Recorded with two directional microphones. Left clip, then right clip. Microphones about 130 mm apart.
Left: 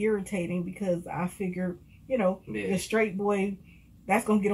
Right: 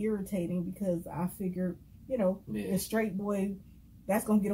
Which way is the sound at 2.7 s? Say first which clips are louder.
Left 6 dB; 15° left (ahead or behind).